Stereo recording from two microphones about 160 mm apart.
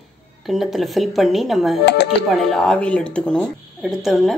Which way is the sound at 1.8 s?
90° left.